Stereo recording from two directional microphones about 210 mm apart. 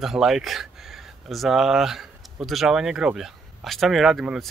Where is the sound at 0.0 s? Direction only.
Centre (ahead or behind).